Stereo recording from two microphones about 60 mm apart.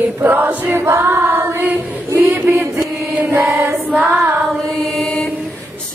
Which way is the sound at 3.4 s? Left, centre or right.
Right.